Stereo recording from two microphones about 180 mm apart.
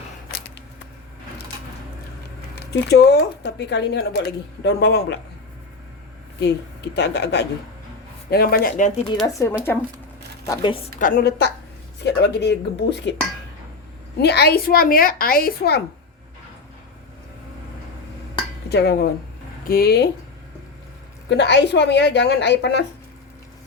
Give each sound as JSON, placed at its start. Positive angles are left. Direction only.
{"t": 2.6, "sound": "speech", "side_deg": 65}
{"t": 6.4, "sound": "speech", "side_deg": 70}
{"t": 8.3, "sound": "a woman's voice", "side_deg": 55}
{"t": 9.2, "sound": "a woman's voice", "side_deg": 15}
{"t": 11.0, "sound": "a woman's voice", "side_deg": 55}
{"t": 14.2, "sound": "a woman's voice", "side_deg": 65}
{"t": 18.7, "sound": "a woman's voice", "side_deg": 65}
{"t": 21.2, "sound": "speech", "side_deg": 75}